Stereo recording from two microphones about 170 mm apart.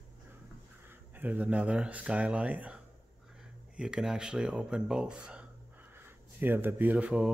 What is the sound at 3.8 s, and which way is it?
Speech, 5° right (ahead or behind).